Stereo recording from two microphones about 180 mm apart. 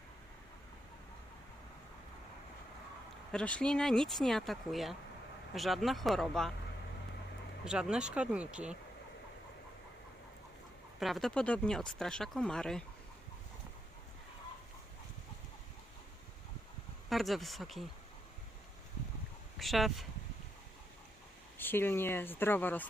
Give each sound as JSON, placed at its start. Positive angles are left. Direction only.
{"t": 3.3, "sound": "speech", "side_deg": 5}
{"t": 7.6, "sound": "speech", "side_deg": -5}
{"t": 11.0, "sound": "speech", "side_deg": 0}
{"t": 17.1, "sound": "speech", "side_deg": 0}
{"t": 19.5, "sound": "speech", "side_deg": 0}
{"t": 21.6, "sound": "speech", "side_deg": 10}